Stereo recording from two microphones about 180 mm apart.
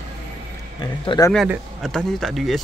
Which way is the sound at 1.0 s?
25° left (ahead or behind).